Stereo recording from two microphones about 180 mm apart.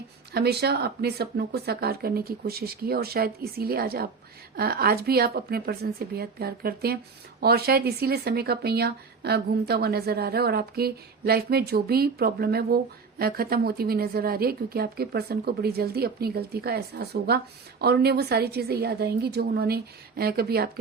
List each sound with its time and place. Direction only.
0.3 s speech: 60° right (ahead or behind)